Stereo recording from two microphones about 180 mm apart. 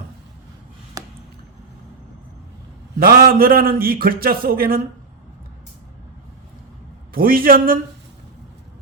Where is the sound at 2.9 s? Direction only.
55° right (ahead or behind).